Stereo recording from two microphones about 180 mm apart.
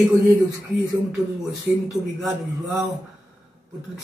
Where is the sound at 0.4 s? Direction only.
20° right (ahead or behind).